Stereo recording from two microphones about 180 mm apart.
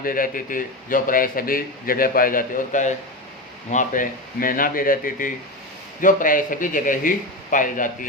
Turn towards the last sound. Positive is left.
turn(degrees=50)  # may be behind; listen again after turning